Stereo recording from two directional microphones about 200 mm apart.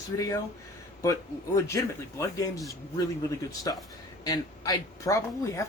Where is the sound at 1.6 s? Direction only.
15° left (ahead or behind).